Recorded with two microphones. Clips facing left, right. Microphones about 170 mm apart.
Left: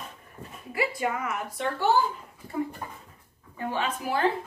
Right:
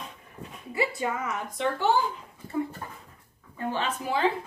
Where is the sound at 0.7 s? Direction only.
25° right (ahead or behind).